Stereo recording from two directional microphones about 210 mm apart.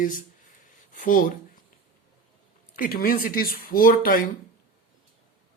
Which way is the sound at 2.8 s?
45° left (ahead or behind).